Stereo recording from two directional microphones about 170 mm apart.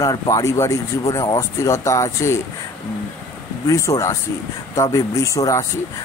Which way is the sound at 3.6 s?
20° left (ahead or behind).